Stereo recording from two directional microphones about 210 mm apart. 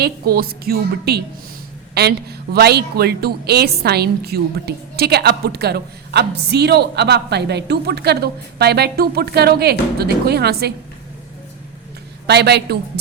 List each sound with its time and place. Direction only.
0.0 s a woman's voice: 45° right (ahead or behind)
12.3 s a woman's voice: 50° right (ahead or behind)